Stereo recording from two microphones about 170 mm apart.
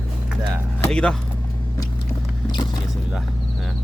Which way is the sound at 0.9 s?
5° left (ahead or behind).